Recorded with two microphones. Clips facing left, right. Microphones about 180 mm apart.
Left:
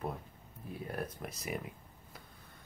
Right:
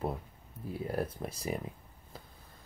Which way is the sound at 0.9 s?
30° right (ahead or behind).